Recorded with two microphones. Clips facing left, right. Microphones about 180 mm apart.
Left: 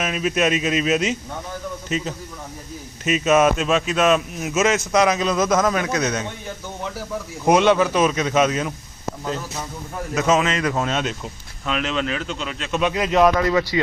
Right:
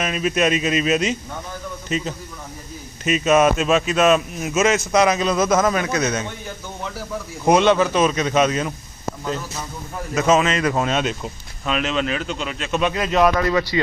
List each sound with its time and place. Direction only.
0.0 s a man's voice: 5° left (ahead or behind)
7.4 s speech: 10° left (ahead or behind)
10.2 s speech: centre (ahead or behind)
12.8 s speech: 15° left (ahead or behind)